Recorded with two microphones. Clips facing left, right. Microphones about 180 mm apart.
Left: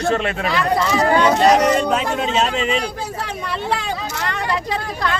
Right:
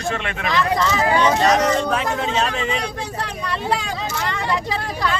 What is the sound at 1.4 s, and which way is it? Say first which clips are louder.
Speech: left 3 dB; 20° left (ahead or behind).